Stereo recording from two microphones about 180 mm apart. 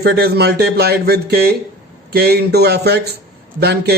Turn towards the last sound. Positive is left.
turn(degrees=-60)  # may be behind; listen again after turning